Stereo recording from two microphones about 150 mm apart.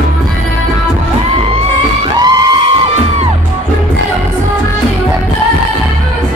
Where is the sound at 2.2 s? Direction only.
25° right (ahead or behind).